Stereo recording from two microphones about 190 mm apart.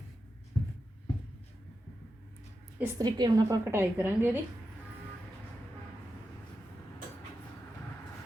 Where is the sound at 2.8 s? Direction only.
20° right (ahead or behind).